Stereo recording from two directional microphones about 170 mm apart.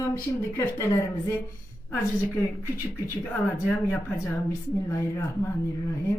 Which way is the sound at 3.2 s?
5° left (ahead or behind).